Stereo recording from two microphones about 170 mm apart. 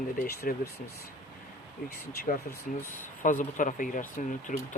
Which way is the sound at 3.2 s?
50° left (ahead or behind).